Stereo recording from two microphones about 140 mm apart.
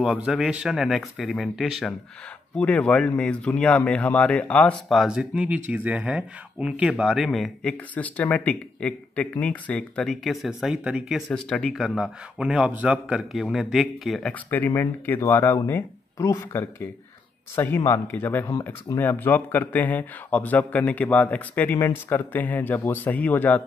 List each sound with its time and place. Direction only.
0.0 s speech: 5° right (ahead or behind)
14.5 s speech: 15° left (ahead or behind)